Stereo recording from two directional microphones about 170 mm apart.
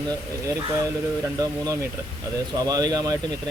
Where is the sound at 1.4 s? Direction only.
20° right (ahead or behind).